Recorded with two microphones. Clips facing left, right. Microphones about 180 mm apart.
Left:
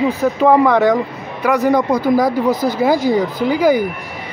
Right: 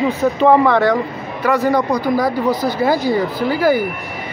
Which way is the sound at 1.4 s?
15° left (ahead or behind).